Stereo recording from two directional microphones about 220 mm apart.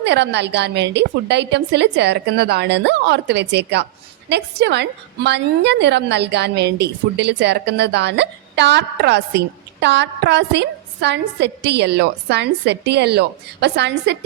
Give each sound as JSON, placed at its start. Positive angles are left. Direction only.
{"t": 0.0, "sound": "a woman's voice", "side_deg": -50}